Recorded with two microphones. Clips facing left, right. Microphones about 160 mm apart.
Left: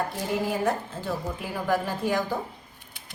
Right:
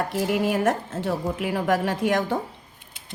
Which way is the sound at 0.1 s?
80° right.